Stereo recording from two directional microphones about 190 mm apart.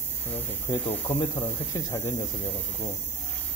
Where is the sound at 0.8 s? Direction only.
10° left (ahead or behind).